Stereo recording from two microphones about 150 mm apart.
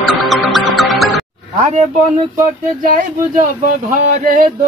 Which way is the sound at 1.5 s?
45° right (ahead or behind).